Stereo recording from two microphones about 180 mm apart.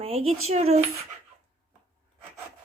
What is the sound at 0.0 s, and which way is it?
Speech, 35° right (ahead or behind).